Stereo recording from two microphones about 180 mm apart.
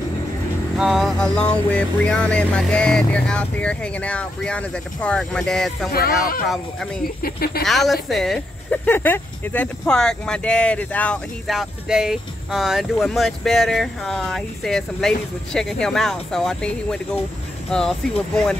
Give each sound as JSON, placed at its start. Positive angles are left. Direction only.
{"t": 0.7, "sound": "speech", "side_deg": 0}
{"t": 5.9, "sound": "speech", "side_deg": 55}
{"t": 7.6, "sound": "speech", "side_deg": 0}